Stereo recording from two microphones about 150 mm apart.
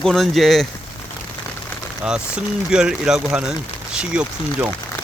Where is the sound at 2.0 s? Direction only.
5° right (ahead or behind).